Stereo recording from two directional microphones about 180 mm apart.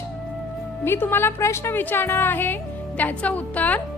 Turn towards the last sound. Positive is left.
turn(degrees=10)  # may be behind; listen again after turning